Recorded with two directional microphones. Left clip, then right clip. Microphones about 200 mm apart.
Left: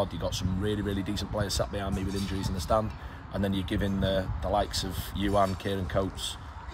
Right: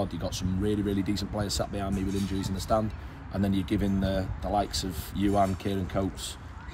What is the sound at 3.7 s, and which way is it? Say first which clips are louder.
Speech: left 2 dB; 30° left (ahead or behind).